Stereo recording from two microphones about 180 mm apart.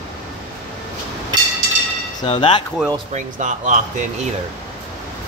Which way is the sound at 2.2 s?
30° left (ahead or behind).